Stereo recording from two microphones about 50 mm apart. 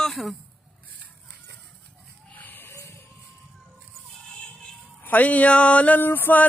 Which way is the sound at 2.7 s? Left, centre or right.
Left.